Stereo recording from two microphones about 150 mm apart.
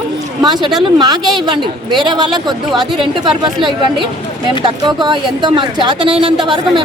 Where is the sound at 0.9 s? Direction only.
30° right (ahead or behind).